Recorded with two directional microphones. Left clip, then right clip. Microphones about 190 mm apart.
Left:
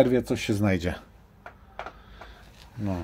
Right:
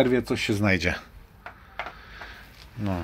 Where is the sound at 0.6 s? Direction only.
15° left (ahead or behind).